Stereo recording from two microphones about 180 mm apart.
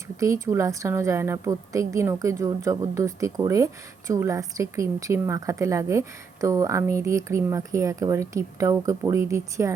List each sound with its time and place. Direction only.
0.2 s a woman's voice: 15° right (ahead or behind)